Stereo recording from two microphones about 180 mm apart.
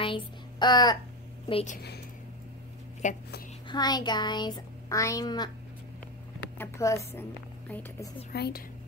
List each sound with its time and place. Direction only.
0.0 s a sound: 25° left (ahead or behind)
1.5 s a woman's voice: 35° left (ahead or behind)
3.0 s a woman's voice: 45° left (ahead or behind)
3.6 s a child's voice: 25° left (ahead or behind)
6.6 s speech: 15° left (ahead or behind)
8.3 s speech: 60° left (ahead or behind)